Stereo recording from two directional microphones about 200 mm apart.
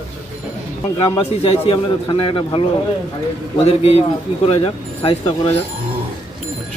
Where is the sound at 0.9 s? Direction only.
30° left (ahead or behind).